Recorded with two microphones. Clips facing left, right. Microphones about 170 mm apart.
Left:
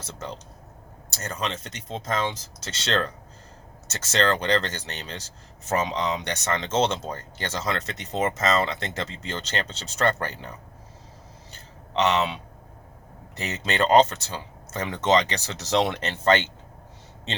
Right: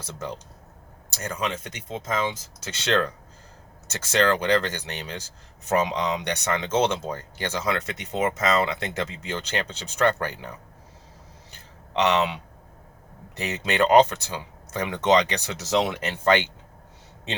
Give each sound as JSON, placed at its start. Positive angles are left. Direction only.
{"t": 0.0, "sound": "speech", "side_deg": -15}
{"t": 11.5, "sound": "a sound", "side_deg": -15}
{"t": 13.3, "sound": "speech", "side_deg": -15}